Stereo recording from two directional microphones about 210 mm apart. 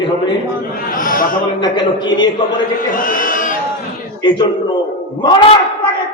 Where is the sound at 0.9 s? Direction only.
40° left (ahead or behind).